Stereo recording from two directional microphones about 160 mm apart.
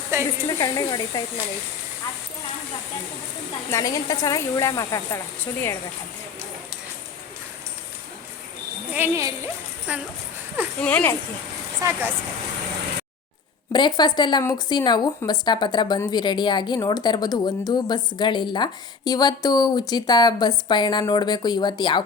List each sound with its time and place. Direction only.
0.1 s a woman's voice: 20° right (ahead or behind)
0.6 s a woman's voice: 20° left (ahead or behind)
3.7 s a woman's voice: 20° left (ahead or behind)
8.9 s speech: 15° right (ahead or behind)
10.8 s speech: 10° left (ahead or behind)
11.8 s speech: 15° right (ahead or behind)
13.7 s a woman's voice: 25° left (ahead or behind)